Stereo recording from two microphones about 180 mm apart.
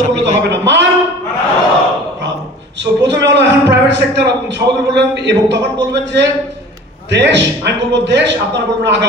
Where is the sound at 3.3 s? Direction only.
75° right (ahead or behind).